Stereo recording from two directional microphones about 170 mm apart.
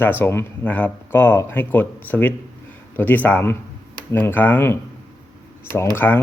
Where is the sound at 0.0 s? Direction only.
10° left (ahead or behind).